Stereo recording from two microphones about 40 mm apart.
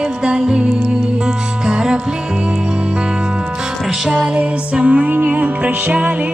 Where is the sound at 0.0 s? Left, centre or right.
Right.